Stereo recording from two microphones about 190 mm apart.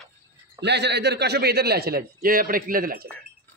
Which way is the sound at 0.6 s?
65° right (ahead or behind).